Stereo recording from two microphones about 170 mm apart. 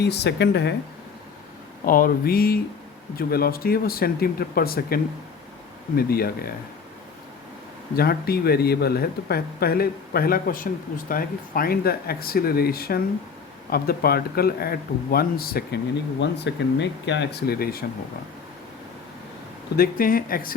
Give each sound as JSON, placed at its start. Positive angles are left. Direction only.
{"t": 0.0, "sound": "speech", "side_deg": 75}
{"t": 1.8, "sound": "speech", "side_deg": 55}
{"t": 6.0, "sound": "speech", "side_deg": 65}
{"t": 7.9, "sound": "speech", "side_deg": 65}
{"t": 16.2, "sound": "speech", "side_deg": 90}
{"t": 19.7, "sound": "speech", "side_deg": 60}